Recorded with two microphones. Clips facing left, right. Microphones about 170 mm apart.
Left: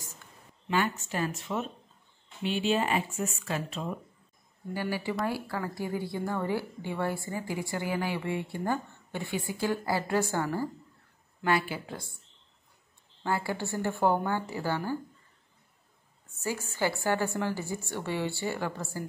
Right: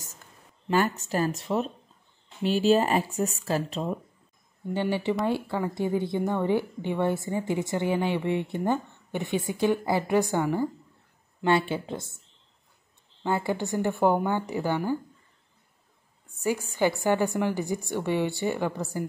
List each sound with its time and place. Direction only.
0.7 s speech: 40° right (ahead or behind)
4.7 s a woman's voice: 25° right (ahead or behind)
13.2 s a woman's voice: 20° right (ahead or behind)
16.3 s a woman's voice: 15° right (ahead or behind)